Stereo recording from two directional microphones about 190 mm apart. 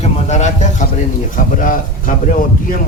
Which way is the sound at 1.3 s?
45° left (ahead or behind).